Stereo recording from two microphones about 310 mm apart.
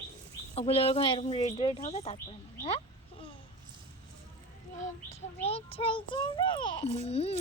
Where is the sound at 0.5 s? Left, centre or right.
Centre.